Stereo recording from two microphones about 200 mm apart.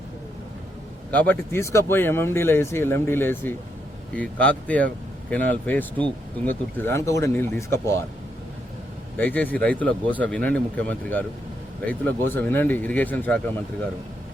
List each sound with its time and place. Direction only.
1.1 s speech: 10° left (ahead or behind)
9.1 s speech: 10° left (ahead or behind)